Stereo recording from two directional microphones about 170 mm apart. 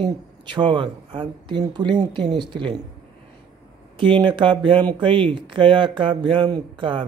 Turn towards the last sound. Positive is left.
turn(degrees=-30)  # may be behind; listen again after turning